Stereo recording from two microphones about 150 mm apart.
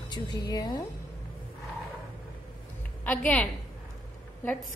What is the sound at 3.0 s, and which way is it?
Speech, 10° left (ahead or behind).